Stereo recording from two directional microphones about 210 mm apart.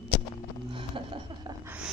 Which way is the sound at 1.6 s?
5° right (ahead or behind).